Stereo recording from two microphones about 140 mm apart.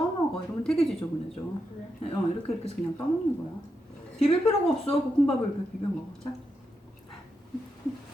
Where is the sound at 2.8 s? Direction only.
10° left (ahead or behind).